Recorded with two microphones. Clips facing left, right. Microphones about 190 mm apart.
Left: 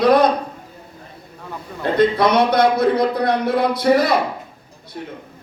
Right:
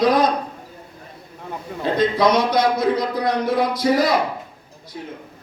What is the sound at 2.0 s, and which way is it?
Speech, 60° left (ahead or behind).